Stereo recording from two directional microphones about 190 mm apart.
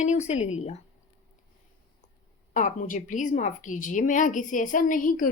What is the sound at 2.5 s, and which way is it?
A woman's voice, 40° left (ahead or behind).